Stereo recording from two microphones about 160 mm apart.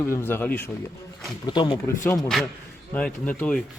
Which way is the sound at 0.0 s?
15° left (ahead or behind).